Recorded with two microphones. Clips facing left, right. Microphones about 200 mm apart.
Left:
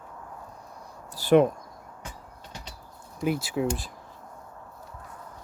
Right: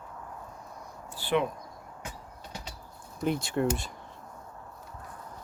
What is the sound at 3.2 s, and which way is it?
Speech, 5° left (ahead or behind).